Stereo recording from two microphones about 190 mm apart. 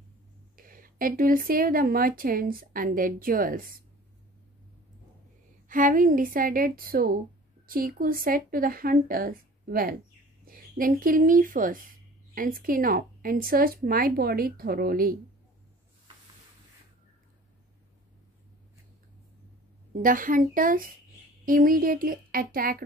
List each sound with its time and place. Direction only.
0.6 s a woman's voice: 45° right (ahead or behind)
5.7 s a woman's voice: 45° right (ahead or behind)
19.9 s a woman's voice: 45° right (ahead or behind)